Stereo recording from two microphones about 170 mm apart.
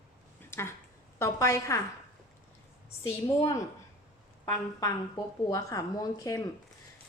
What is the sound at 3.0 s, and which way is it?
Speech, 20° left (ahead or behind).